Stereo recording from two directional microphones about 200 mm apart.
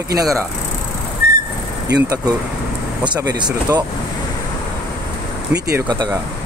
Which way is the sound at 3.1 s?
20° right (ahead or behind).